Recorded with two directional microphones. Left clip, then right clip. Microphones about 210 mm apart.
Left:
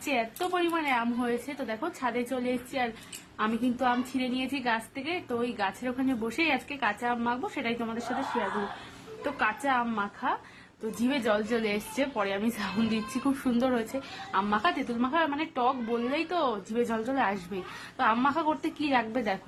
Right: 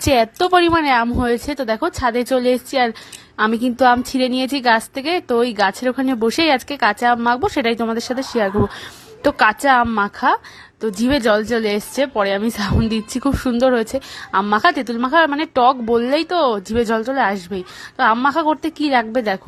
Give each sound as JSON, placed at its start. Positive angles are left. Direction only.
{"t": 0.0, "sound": "a woman's voice", "side_deg": -45}
{"t": 9.2, "sound": "a woman's voice", "side_deg": -45}